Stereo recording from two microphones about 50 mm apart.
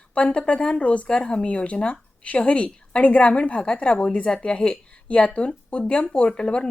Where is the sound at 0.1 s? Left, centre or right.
Left.